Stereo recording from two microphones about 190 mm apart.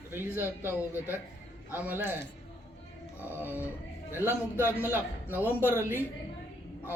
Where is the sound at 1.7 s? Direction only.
10° right (ahead or behind).